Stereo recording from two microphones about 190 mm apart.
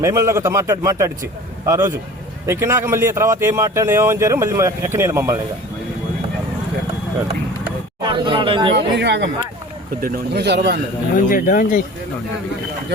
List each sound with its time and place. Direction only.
0.0 s speech: 15° right (ahead or behind)
8.0 s speech: 25° right (ahead or behind)
8.7 s speech: 65° right (ahead or behind)
11.1 s speech: 45° left (ahead or behind)